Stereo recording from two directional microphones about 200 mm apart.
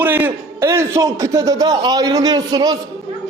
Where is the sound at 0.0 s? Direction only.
10° right (ahead or behind).